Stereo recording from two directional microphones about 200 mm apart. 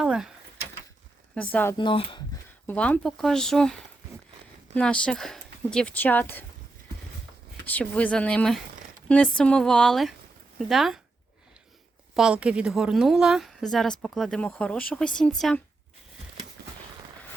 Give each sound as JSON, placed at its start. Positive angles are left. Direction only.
{"t": 0.0, "sound": "a sound", "side_deg": -5}
{"t": 1.4, "sound": "speech", "side_deg": 5}
{"t": 1.8, "sound": "speech", "side_deg": 25}
{"t": 2.6, "sound": "speech", "side_deg": 5}
{"t": 7.6, "sound": "speech", "side_deg": 10}
{"t": 12.1, "sound": "speech", "side_deg": -5}